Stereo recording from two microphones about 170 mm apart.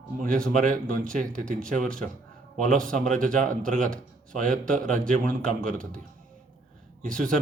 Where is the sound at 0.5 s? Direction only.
50° right (ahead or behind).